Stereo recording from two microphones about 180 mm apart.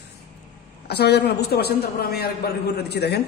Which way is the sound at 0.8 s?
65° left (ahead or behind).